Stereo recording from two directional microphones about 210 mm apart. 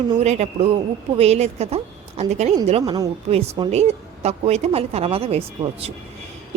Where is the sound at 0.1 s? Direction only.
30° right (ahead or behind).